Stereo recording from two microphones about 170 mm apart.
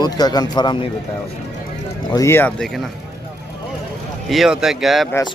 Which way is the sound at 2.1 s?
15° left (ahead or behind).